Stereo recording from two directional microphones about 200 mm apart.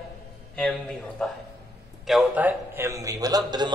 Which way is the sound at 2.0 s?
5° right (ahead or behind).